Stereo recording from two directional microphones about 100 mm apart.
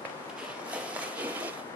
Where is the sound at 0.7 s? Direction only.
15° right (ahead or behind).